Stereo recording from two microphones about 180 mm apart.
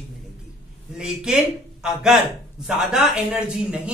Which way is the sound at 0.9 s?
5° right (ahead or behind).